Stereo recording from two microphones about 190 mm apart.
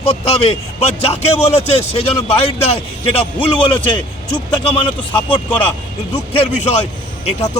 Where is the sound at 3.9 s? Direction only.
25° left (ahead or behind).